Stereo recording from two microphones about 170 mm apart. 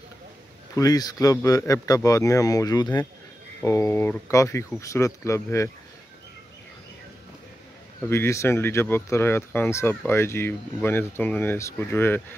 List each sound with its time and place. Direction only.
0.7 s speech: 20° left (ahead or behind)
8.0 s speech: 15° left (ahead or behind)